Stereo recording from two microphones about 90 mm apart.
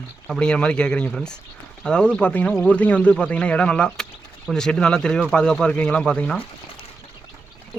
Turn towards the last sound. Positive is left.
turn(degrees=10)  # may be behind; listen again after turning